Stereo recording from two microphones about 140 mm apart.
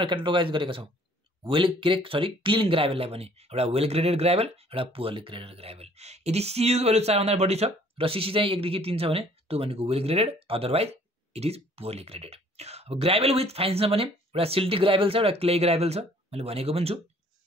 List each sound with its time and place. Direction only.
0.0 s speech: 35° right (ahead or behind)